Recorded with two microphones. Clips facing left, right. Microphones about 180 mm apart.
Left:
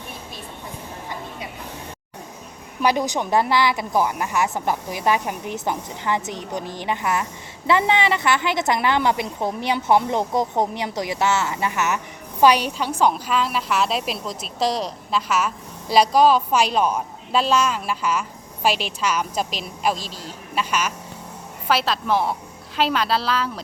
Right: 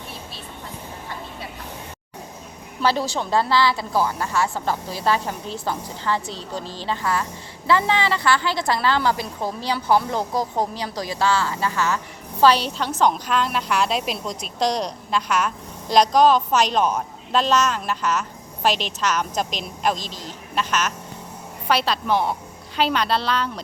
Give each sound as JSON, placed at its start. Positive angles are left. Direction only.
{"t": 2.8, "sound": "a woman's voice", "side_deg": 15}